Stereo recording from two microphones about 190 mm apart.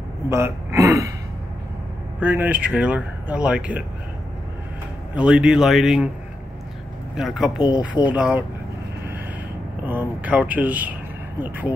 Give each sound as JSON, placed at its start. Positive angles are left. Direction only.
{"t": 0.3, "sound": "speech", "side_deg": -15}
{"t": 2.1, "sound": "speech", "side_deg": -10}
{"t": 5.1, "sound": "speech", "side_deg": -5}
{"t": 7.2, "sound": "speech", "side_deg": 0}
{"t": 9.8, "sound": "speech", "side_deg": -10}